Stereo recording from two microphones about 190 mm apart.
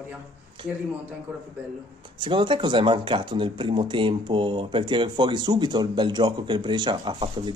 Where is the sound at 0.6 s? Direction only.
25° right (ahead or behind).